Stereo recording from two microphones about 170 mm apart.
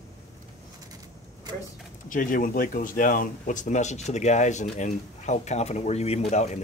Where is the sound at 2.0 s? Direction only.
50° left (ahead or behind).